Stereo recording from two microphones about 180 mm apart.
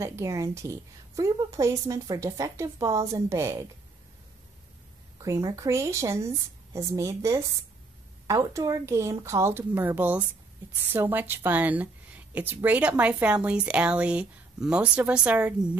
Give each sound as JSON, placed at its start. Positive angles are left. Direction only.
{"t": 0.0, "sound": "a woman's voice", "side_deg": -15}
{"t": 5.2, "sound": "a woman's voice", "side_deg": -20}